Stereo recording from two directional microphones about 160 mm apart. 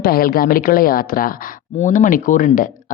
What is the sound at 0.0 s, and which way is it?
Speech, 65° left (ahead or behind).